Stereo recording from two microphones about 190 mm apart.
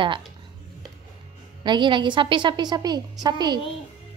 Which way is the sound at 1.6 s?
25° right (ahead or behind).